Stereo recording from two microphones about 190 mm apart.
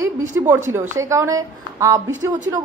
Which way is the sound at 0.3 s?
10° right (ahead or behind).